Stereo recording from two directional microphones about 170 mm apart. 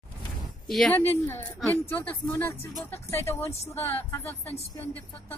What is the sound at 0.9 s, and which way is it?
Speech, 15° left (ahead or behind).